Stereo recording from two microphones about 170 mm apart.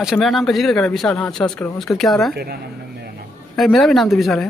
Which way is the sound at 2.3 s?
70° right (ahead or behind).